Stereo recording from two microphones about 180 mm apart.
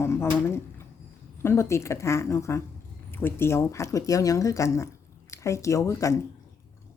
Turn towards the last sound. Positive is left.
turn(degrees=15)  # may be behind; listen again after turning